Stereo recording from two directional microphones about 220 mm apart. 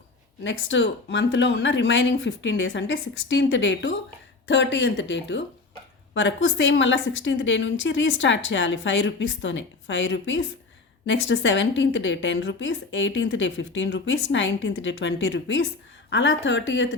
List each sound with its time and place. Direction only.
0.4 s a woman's voice: 55° left (ahead or behind)